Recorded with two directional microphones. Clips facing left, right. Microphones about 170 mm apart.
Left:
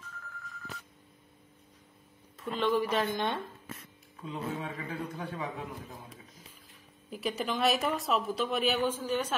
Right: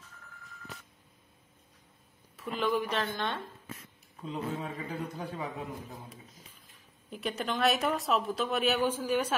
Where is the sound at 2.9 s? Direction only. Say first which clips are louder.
Left 3 dB; 15° left (ahead or behind).